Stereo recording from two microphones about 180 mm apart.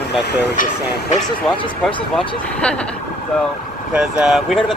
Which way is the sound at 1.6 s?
30° left (ahead or behind).